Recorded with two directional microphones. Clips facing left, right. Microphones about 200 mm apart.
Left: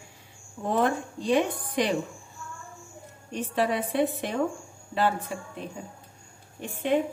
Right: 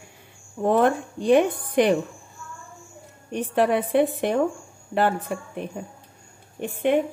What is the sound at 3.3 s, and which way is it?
A woman's voice, 55° right (ahead or behind).